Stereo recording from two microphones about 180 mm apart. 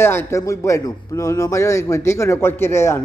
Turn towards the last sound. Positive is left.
turn(degrees=15)  # may be behind; listen again after turning